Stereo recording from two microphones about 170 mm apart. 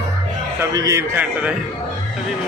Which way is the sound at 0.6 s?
20° right (ahead or behind).